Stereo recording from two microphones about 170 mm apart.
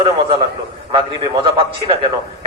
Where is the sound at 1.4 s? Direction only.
30° right (ahead or behind).